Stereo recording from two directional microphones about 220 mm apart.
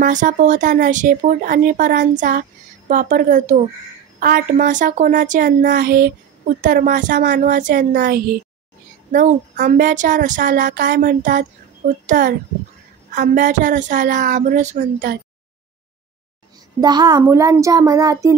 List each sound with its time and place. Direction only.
0.0 s speech: 35° right (ahead or behind)
16.8 s a child's voice: 20° right (ahead or behind)